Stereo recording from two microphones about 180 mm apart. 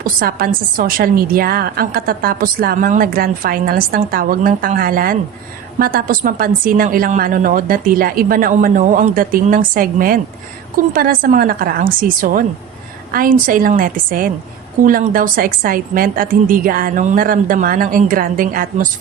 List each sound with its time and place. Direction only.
0.0 s a woman's voice: 55° right (ahead or behind)